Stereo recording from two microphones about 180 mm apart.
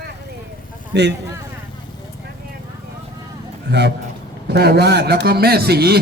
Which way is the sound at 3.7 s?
70° right (ahead or behind).